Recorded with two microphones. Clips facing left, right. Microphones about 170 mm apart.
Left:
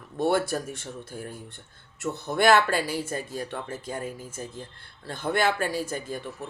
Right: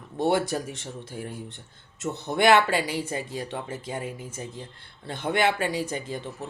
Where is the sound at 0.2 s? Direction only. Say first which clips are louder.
Even; 20° right (ahead or behind).